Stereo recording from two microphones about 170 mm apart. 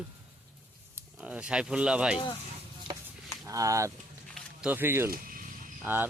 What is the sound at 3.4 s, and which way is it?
Speech, 20° right (ahead or behind).